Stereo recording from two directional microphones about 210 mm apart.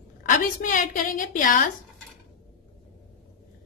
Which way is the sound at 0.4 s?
40° left (ahead or behind).